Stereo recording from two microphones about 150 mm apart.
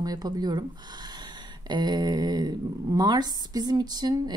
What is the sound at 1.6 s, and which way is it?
Speech, 30° right (ahead or behind).